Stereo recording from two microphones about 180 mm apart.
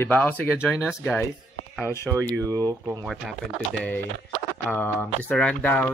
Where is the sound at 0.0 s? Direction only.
10° left (ahead or behind).